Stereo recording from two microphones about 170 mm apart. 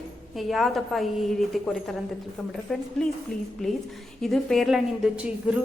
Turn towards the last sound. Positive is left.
turn(degrees=-5)  # may be behind; listen again after turning